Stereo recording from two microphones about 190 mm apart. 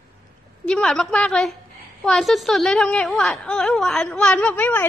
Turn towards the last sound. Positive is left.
turn(degrees=10)  # may be behind; listen again after turning